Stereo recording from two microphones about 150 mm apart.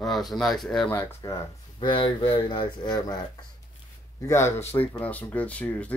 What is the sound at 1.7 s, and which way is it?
Speech, 35° left (ahead or behind).